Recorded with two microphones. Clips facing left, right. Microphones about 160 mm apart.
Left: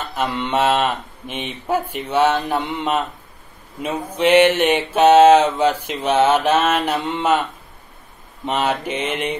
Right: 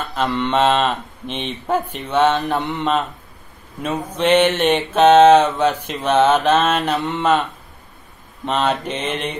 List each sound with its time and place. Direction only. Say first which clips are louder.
0.1 s mantra: right 2 dB; 10° left (ahead or behind)
8.5 s mantra: right 1 dB; 10° left (ahead or behind)
9.1 s mantra: left 2 dB; 55° left (ahead or behind)